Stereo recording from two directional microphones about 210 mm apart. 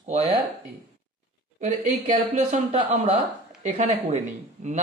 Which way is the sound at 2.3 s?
30° right (ahead or behind).